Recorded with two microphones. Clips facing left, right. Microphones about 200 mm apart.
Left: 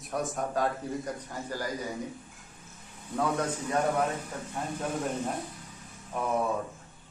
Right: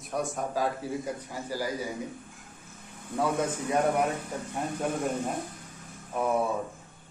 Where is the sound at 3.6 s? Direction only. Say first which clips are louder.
Right 2 dB; 15° right (ahead or behind).